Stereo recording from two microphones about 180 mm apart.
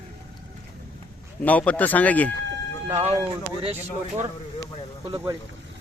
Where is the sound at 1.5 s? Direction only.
10° left (ahead or behind).